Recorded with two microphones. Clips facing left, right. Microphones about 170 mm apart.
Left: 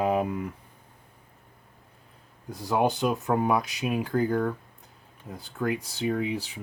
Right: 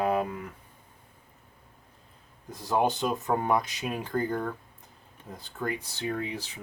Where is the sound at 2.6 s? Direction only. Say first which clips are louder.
Left 2 dB; 10° left (ahead or behind).